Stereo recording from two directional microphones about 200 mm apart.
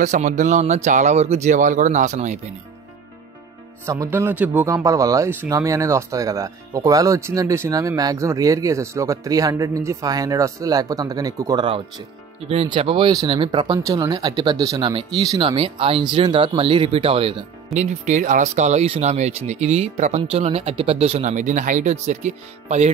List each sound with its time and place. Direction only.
0.0 s speech: 35° right (ahead or behind)
3.8 s speech: 15° right (ahead or behind); by 22.8 s 35° right (ahead or behind)